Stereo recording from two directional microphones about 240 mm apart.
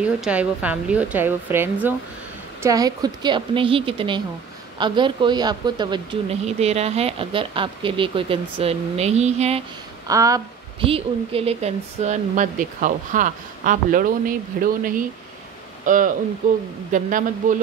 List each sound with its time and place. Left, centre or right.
0.0 s a woman's voice: centre; by 9.6 s right
10.0 s a woman's voice: centre; by 17.6 s right